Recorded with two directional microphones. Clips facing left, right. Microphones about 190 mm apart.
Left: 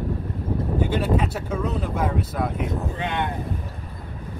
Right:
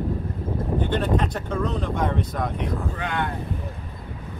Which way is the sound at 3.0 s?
20° left (ahead or behind).